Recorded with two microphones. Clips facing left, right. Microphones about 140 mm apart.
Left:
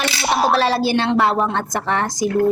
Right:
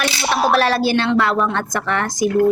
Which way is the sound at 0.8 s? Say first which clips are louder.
Even; 25° left (ahead or behind).